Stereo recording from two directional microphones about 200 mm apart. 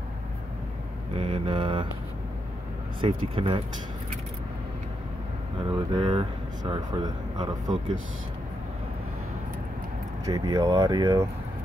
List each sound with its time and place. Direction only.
1.1 s mantra: 25° right (ahead or behind)
3.0 s speech: 30° right (ahead or behind)
5.7 s speech: 20° right (ahead or behind)
10.2 s speech: 20° right (ahead or behind)